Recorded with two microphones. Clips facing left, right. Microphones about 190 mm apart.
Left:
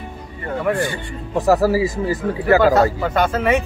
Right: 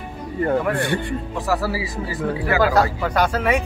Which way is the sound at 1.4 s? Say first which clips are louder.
Left 9 dB; 45° left (ahead or behind).